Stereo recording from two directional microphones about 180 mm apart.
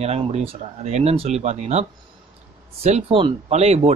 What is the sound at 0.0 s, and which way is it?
Speech, 35° right (ahead or behind).